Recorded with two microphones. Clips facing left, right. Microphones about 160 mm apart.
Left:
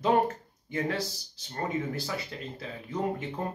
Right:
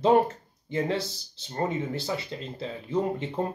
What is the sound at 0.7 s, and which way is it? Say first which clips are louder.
Speech: right 3 dB; 25° right (ahead or behind).